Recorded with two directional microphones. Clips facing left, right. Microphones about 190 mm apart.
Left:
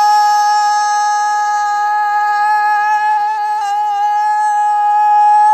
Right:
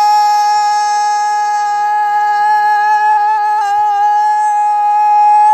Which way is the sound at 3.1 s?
60° right (ahead or behind).